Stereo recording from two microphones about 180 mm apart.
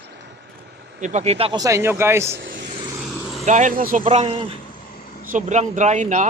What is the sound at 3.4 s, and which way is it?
Speech, 45° right (ahead or behind).